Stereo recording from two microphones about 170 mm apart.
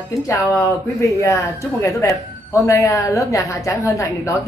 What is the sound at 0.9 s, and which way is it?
Speech, 15° left (ahead or behind).